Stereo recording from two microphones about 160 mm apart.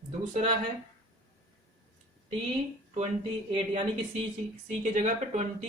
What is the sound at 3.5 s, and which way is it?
Speech, 45° right (ahead or behind).